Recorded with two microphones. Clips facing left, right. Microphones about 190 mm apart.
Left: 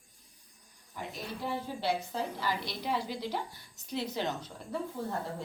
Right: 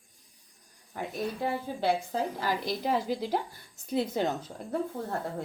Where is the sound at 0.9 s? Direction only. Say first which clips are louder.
Right 7 dB; 55° right (ahead or behind).